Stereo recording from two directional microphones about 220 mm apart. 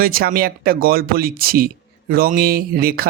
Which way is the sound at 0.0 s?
40° right (ahead or behind).